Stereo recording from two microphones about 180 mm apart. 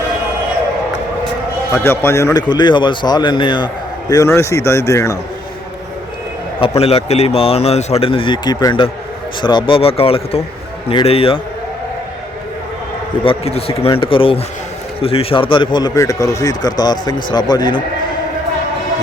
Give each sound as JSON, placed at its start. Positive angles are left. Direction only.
{"t": 1.7, "sound": "a man's voice", "side_deg": 15}
{"t": 4.1, "sound": "speech", "side_deg": 15}
{"t": 6.6, "sound": "a man's voice", "side_deg": 35}
{"t": 13.2, "sound": "a man's voice", "side_deg": 35}